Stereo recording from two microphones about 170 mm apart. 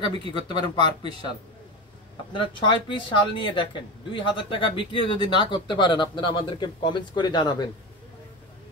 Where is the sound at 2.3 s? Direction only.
30° left (ahead or behind).